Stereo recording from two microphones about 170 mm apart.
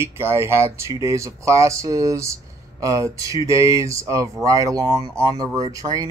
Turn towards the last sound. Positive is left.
turn(degrees=-20)  # may be behind; listen again after turning